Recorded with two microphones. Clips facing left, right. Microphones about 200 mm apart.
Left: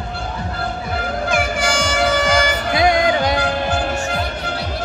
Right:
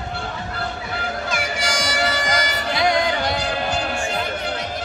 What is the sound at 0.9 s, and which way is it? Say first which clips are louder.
Music: left 8 dB; 50° left (ahead or behind).